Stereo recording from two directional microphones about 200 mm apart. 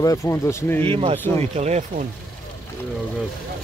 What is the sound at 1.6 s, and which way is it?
Speech, 35° right (ahead or behind).